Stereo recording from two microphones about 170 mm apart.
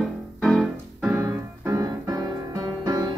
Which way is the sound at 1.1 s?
15° right (ahead or behind).